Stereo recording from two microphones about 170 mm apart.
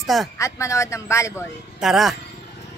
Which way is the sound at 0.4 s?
15° left (ahead or behind).